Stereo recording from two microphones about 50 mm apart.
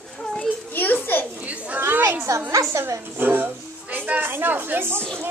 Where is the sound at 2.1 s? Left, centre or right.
Right.